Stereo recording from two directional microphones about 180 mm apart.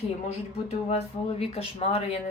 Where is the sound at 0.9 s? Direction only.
35° left (ahead or behind).